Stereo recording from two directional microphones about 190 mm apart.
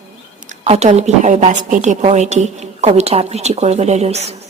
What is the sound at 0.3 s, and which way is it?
A woman's voice, 40° right (ahead or behind).